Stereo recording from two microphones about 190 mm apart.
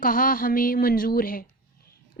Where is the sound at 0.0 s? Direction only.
50° left (ahead or behind).